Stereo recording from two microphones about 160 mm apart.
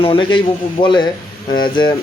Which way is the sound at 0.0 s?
30° left (ahead or behind).